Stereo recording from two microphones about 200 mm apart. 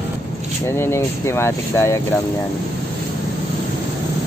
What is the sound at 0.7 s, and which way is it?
Speech, 15° left (ahead or behind).